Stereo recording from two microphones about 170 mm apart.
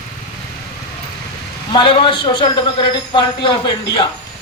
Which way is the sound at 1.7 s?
30° left (ahead or behind).